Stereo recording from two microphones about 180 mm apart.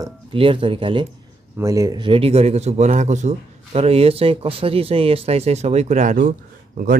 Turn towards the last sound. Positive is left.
turn(degrees=-50)  # may be behind; listen again after turning